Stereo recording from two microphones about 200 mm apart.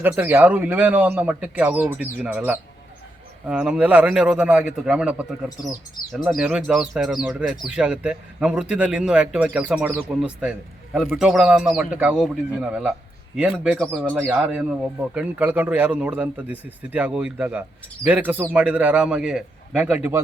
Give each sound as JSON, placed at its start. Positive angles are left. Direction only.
{"t": 0.0, "sound": "speech", "side_deg": -10}